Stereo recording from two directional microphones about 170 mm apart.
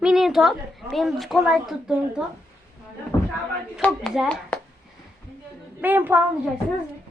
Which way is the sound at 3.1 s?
20° left (ahead or behind).